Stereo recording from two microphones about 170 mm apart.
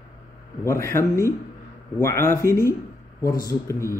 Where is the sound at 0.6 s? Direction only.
15° left (ahead or behind).